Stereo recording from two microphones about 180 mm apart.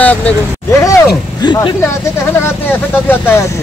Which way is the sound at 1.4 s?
25° left (ahead or behind).